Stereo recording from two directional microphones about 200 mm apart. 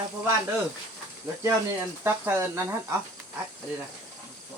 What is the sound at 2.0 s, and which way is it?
Speech, 10° right (ahead or behind).